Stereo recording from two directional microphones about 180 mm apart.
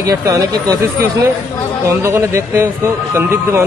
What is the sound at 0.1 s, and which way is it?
Speech, 20° right (ahead or behind).